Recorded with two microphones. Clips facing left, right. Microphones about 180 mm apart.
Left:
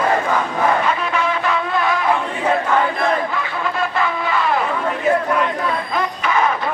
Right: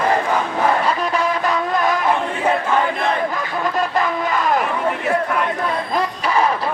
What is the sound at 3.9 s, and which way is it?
Vehicle, 40° right (ahead or behind).